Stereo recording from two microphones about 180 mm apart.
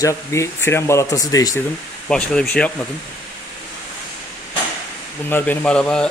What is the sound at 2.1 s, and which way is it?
Speech, 5° left (ahead or behind).